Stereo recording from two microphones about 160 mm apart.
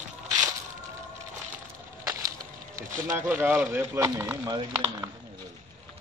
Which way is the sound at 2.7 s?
20° right (ahead or behind).